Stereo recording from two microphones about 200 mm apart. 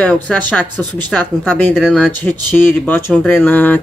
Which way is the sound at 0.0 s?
5° left (ahead or behind).